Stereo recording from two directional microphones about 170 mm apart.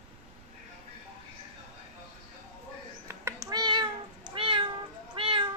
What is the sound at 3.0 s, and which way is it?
Cat, 20° right (ahead or behind).